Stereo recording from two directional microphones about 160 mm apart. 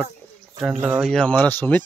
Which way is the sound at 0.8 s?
10° right (ahead or behind).